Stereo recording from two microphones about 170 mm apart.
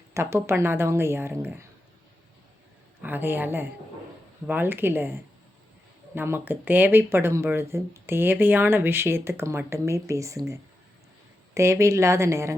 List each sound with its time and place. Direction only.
0.1 s speech: 15° right (ahead or behind)
3.0 s speech: 10° right (ahead or behind)